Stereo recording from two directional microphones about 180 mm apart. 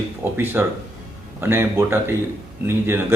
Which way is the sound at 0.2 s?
15° right (ahead or behind).